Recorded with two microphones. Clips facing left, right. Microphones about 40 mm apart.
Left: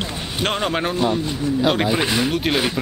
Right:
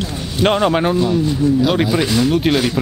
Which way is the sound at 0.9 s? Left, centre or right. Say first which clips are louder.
Right 4 dB; centre.